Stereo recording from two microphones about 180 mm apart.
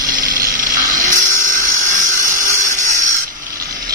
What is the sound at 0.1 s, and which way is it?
Dental drill, 50° right (ahead or behind).